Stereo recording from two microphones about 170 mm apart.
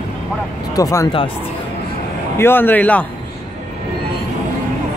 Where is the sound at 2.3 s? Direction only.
10° left (ahead or behind).